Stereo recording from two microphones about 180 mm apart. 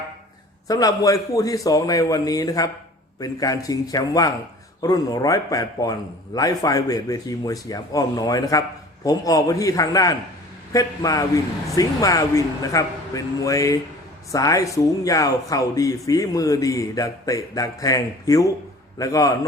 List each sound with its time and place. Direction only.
0.7 s speech: 20° left (ahead or behind)